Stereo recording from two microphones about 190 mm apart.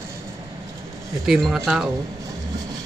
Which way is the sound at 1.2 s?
Centre (ahead or behind).